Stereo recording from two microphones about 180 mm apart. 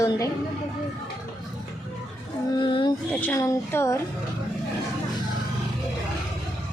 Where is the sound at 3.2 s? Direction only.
15° left (ahead or behind).